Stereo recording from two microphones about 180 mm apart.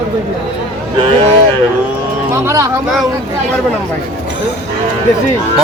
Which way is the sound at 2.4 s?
15° right (ahead or behind).